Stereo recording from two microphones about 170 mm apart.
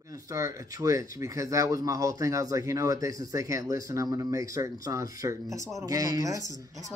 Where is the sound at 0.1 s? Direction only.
20° right (ahead or behind).